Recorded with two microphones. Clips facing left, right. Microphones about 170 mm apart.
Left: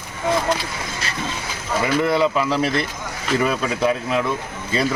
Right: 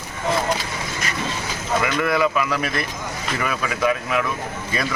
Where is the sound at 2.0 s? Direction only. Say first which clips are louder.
Left 3 dB; 25° left (ahead or behind).